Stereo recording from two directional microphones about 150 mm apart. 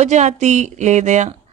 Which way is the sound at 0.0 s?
50° right (ahead or behind).